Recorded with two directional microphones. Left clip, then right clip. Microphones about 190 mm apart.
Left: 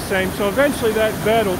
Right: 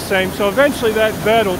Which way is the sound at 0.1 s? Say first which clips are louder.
Right 4 dB; 5° right (ahead or behind).